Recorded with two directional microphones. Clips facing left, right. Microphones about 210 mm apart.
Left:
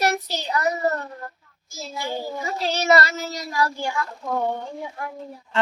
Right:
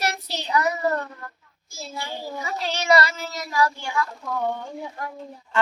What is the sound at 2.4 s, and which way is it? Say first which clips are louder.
Speech: left 3 dB; 35° left (ahead or behind).